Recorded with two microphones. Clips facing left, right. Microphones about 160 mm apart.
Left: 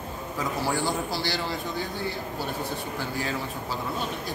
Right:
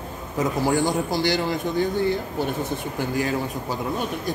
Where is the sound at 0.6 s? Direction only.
15° right (ahead or behind).